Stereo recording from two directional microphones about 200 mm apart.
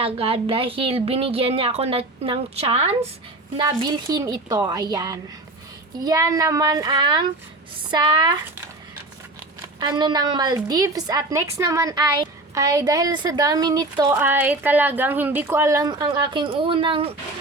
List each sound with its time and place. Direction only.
0.0 s a woman's voice: 30° right (ahead or behind)
14.2 s a woman's voice: 10° right (ahead or behind); by 17.2 s 30° right (ahead or behind)